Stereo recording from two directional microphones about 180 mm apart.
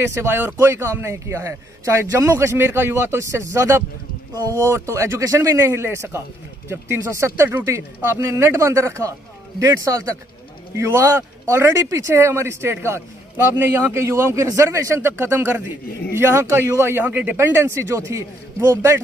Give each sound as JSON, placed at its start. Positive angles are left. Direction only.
{"t": 0.1, "sound": "a man's voice", "side_deg": -15}